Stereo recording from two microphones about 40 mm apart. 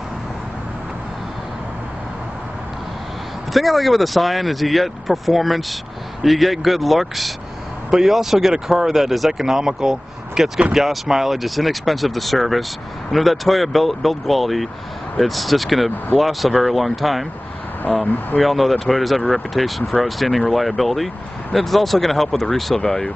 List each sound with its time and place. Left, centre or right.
3.5 s speech: centre
18.0 s speech: left
18.4 s speech: centre